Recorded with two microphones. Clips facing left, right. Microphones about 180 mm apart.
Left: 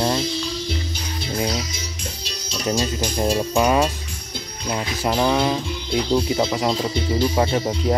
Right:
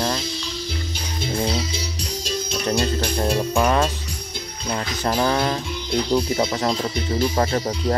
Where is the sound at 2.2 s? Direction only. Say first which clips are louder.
Right 1 dB; 55° right (ahead or behind).